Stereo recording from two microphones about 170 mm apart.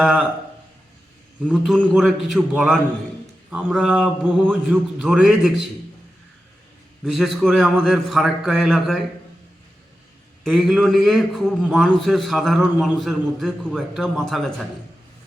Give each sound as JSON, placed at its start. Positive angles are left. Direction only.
{"t": 0.0, "sound": "a man's voice", "side_deg": -5}
{"t": 1.5, "sound": "a man's voice", "side_deg": 0}
{"t": 7.0, "sound": "a man's voice", "side_deg": 0}
{"t": 10.4, "sound": "a man's voice", "side_deg": 0}